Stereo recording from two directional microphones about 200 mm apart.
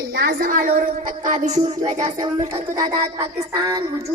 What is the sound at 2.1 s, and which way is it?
Speech, 20° right (ahead or behind).